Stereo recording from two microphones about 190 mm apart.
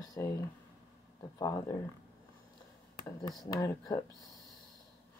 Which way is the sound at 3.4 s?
15° left (ahead or behind).